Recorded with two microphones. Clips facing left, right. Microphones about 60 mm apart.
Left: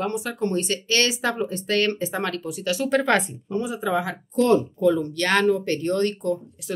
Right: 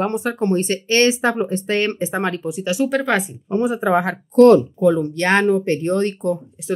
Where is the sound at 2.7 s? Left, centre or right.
Centre.